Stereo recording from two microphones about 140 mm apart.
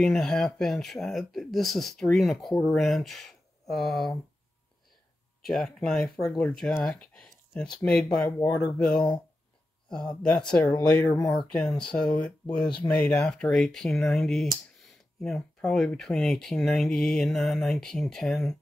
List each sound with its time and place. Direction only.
0.0 s speech: 5° left (ahead or behind)
5.4 s speech: centre (ahead or behind)
10.4 s speech: 5° left (ahead or behind)